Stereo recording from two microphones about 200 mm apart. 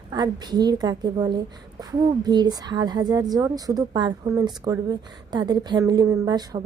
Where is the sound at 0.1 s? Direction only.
20° right (ahead or behind).